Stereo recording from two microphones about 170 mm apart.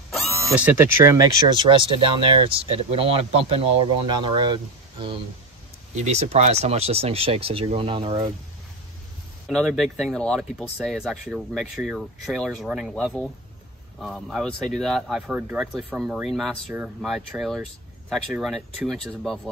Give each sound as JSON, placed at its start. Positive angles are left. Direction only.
{"t": 0.1, "sound": "a sound", "side_deg": 0}
{"t": 0.5, "sound": "speech", "side_deg": -10}
{"t": 5.9, "sound": "speech", "side_deg": -40}
{"t": 9.5, "sound": "speech", "side_deg": 0}